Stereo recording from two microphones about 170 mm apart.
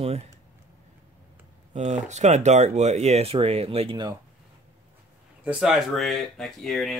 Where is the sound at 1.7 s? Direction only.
40° right (ahead or behind).